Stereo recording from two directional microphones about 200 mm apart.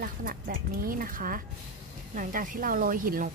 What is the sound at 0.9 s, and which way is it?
Speech, 45° right (ahead or behind).